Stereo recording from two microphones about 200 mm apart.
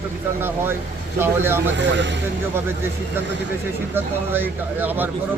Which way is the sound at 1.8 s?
60° right (ahead or behind).